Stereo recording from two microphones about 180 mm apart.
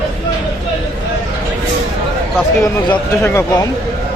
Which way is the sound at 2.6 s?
15° left (ahead or behind).